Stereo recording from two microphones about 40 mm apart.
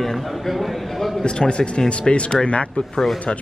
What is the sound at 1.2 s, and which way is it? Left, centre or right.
Speech, left.